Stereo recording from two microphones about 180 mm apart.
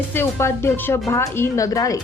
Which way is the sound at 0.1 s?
15° left (ahead or behind).